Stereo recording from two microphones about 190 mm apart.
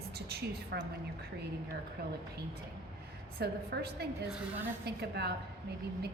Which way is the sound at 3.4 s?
55° right (ahead or behind).